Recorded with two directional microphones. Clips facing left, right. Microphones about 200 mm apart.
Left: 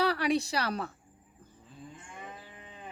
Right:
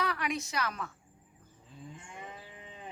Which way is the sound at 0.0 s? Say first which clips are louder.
Left 6 dB; 35° left (ahead or behind).